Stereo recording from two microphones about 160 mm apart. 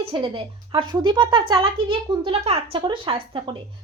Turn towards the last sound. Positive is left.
turn(degrees=-30)  # may be behind; listen again after turning